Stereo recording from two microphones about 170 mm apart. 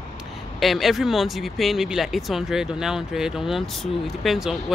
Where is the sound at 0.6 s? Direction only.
Centre (ahead or behind).